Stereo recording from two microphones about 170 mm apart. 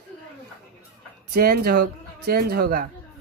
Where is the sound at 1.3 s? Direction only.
65° right (ahead or behind).